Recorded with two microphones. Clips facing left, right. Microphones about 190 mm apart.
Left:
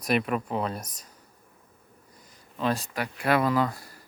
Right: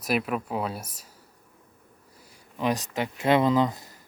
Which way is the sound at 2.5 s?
15° right (ahead or behind).